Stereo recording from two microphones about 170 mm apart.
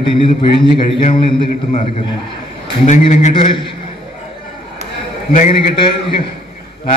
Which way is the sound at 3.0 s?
45° left (ahead or behind).